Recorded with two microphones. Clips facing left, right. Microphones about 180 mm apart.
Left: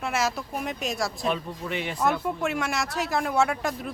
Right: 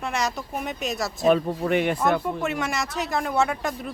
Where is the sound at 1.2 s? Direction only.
50° right (ahead or behind).